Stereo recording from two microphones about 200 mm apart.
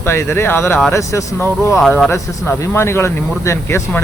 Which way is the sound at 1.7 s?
5° left (ahead or behind).